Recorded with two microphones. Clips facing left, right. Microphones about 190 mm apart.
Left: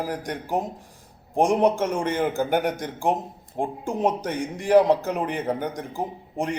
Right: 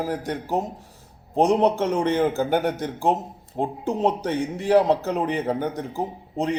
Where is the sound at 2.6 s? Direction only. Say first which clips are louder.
Right 1 dB; 15° left (ahead or behind).